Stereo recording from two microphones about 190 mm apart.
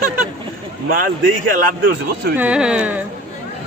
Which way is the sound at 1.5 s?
45° right (ahead or behind).